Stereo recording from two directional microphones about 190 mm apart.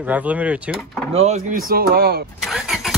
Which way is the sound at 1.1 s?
35° right (ahead or behind).